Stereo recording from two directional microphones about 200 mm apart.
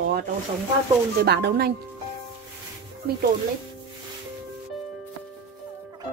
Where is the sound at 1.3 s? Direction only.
55° right (ahead or behind).